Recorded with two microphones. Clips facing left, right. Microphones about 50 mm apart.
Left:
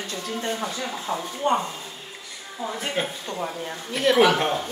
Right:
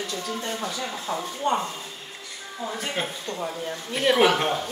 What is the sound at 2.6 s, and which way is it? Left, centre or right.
A woman's voice, centre.